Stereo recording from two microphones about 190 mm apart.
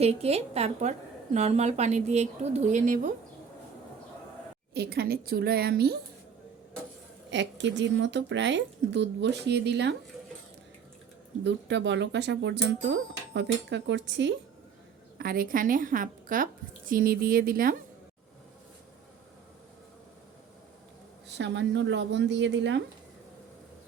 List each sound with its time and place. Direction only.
0.0 s a woman's voice: 30° right (ahead or behind)
4.7 s a woman's voice: 60° right (ahead or behind)
7.3 s speech: 70° right (ahead or behind)
11.4 s speech: 70° right (ahead or behind)
15.2 s a woman's voice: 50° right (ahead or behind)
21.2 s speech: 65° right (ahead or behind)